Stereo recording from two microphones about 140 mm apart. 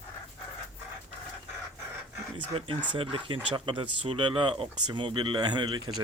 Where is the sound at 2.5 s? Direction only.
40° right (ahead or behind).